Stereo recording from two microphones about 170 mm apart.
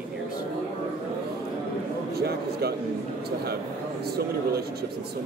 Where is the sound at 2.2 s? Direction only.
70° right (ahead or behind).